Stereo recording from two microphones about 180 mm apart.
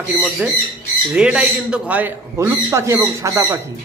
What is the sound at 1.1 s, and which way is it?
A man's voice, 5° right (ahead or behind).